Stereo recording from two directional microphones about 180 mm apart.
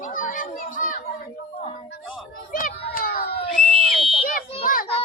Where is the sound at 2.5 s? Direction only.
50° left (ahead or behind).